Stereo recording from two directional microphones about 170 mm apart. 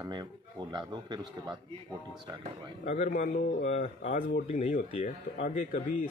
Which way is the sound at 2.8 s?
45° left (ahead or behind).